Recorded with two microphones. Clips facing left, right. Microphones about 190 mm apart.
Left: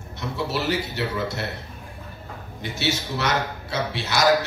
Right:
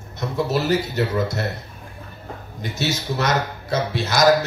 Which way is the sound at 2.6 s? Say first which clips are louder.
Right 1 dB; 40° right (ahead or behind).